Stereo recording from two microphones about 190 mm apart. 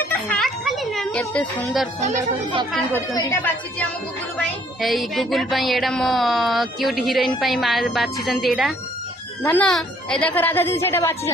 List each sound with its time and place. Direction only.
0.0 s music: 10° left (ahead or behind)
1.2 s a woman's voice: 5° left (ahead or behind)
2.0 s speech: 40° right (ahead or behind)
2.7 s speech: centre (ahead or behind)
3.2 s a woman's voice: 10° left (ahead or behind)
4.8 s speech: centre (ahead or behind)
9.4 s a woman's voice: 10° left (ahead or behind)